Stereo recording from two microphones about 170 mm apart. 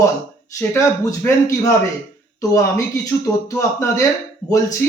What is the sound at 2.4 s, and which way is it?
Speech, 20° left (ahead or behind).